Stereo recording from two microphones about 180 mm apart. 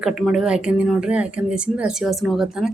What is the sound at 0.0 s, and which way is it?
Speech, centre (ahead or behind).